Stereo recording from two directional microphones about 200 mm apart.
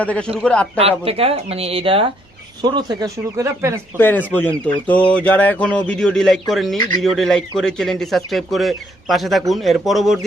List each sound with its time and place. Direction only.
0.0 s a man's voice: 5° left (ahead or behind)
0.8 s speech: 30° right (ahead or behind)
3.9 s a man's voice: 10° left (ahead or behind)